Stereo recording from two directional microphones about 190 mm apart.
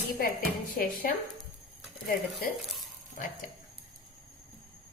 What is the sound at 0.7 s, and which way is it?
Speech, 50° left (ahead or behind).